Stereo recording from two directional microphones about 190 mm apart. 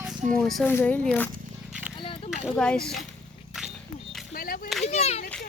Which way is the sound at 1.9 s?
30° left (ahead or behind).